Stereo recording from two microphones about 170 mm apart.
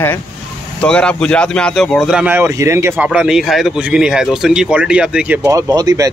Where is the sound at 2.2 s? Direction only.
15° right (ahead or behind).